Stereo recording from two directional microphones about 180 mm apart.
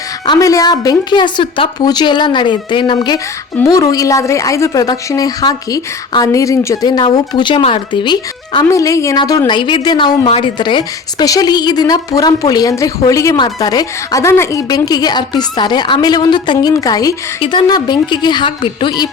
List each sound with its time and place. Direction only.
0.3 s speech: 20° left (ahead or behind)